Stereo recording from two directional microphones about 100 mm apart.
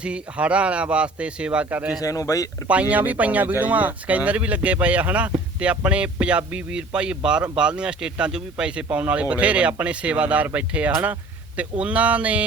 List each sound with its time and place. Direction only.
0.0 s speech: 10° right (ahead or behind)
2.0 s speech: 35° left (ahead or behind)
2.9 s speech: 15° right (ahead or behind)